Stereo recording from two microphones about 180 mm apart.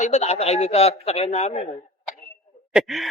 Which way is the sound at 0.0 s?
35° left (ahead or behind).